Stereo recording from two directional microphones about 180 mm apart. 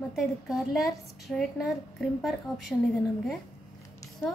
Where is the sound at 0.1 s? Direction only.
Centre (ahead or behind).